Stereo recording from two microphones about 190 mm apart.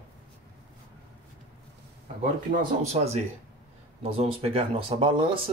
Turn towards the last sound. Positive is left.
turn(degrees=-25)  # may be behind; listen again after turning